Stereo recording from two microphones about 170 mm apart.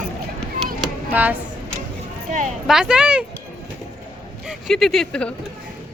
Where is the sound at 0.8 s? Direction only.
10° right (ahead or behind).